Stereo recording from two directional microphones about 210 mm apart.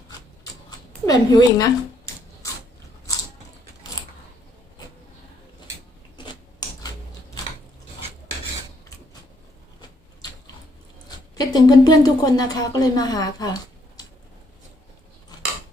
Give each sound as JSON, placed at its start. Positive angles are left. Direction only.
{"t": 1.0, "sound": "speech", "side_deg": 15}
{"t": 11.3, "sound": "speech", "side_deg": 20}